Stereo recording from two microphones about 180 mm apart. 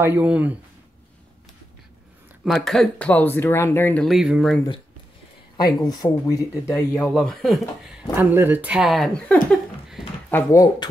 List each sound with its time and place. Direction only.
0.0 s speech: 10° right (ahead or behind)
2.4 s speech: centre (ahead or behind)
4.1 s speech: centre (ahead or behind)
5.8 s speech: 20° left (ahead or behind); by 7.6 s centre (ahead or behind)
8.2 s speech: 10° right (ahead or behind)
10.3 s speech: 20° left (ahead or behind)